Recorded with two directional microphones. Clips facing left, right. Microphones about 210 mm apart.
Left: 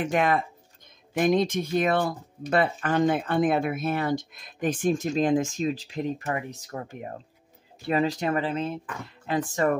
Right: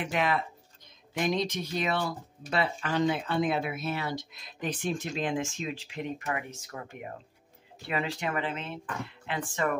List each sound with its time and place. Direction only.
0.0 s speech: 45° left (ahead or behind)